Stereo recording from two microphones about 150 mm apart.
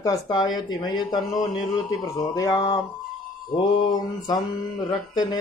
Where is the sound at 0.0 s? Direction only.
25° left (ahead or behind).